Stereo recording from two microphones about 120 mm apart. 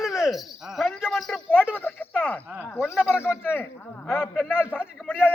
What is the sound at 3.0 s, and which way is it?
Speech, 10° right (ahead or behind).